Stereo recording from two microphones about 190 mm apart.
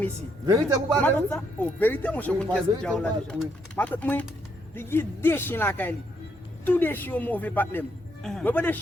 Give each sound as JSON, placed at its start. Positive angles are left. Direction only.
{"t": 0.4, "sound": "a man's voice", "side_deg": -15}
{"t": 1.0, "sound": "speech", "side_deg": 10}